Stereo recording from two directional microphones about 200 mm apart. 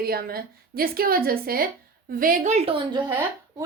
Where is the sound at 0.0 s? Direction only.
50° right (ahead or behind).